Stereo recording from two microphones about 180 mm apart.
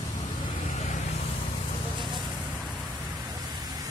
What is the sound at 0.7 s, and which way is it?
Vehicle, 40° left (ahead or behind).